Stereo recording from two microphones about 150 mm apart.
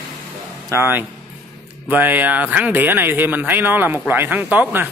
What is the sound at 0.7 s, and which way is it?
Speech, 15° right (ahead or behind).